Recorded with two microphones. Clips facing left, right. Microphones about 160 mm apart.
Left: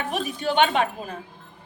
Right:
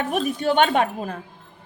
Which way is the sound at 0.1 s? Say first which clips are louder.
Right 4 dB; 50° right (ahead or behind).